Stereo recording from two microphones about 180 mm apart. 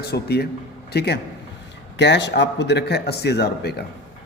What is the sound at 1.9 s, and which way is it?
Speech, 75° left (ahead or behind).